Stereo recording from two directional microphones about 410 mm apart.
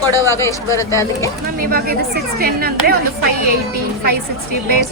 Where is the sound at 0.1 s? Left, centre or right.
Centre.